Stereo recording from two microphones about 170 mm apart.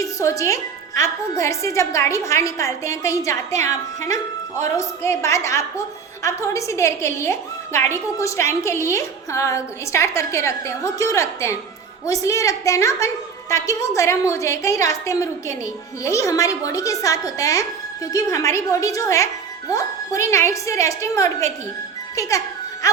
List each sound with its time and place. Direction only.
0.0 s a woman's voice: 20° left (ahead or behind)